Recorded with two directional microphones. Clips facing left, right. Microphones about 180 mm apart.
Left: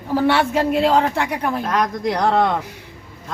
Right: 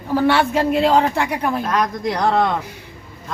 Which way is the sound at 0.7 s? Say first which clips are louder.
Right 1 dB; centre (ahead or behind).